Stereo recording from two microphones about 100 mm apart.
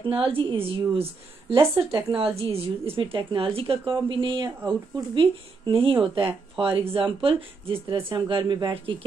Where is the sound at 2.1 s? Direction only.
70° right (ahead or behind).